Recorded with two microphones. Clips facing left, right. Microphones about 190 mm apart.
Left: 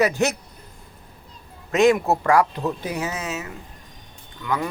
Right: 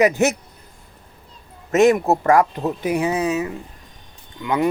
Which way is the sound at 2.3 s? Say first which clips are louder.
Right 2 dB; 45° right (ahead or behind).